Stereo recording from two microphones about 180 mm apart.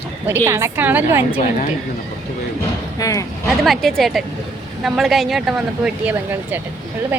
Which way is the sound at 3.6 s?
Centre (ahead or behind).